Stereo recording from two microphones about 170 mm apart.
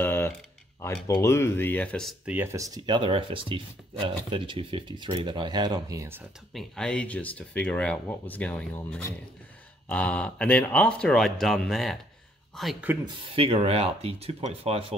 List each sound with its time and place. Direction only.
0.0 s a sound: 15° left (ahead or behind)
1.0 s speech: 15° left (ahead or behind); by 2.3 s centre (ahead or behind)
2.3 s speech: 15° right (ahead or behind)
6.5 s speech: 5° left (ahead or behind)
13.0 s speech: 30° right (ahead or behind)